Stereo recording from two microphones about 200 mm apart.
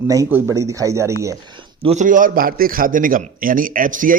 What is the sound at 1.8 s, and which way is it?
Speech, 35° right (ahead or behind).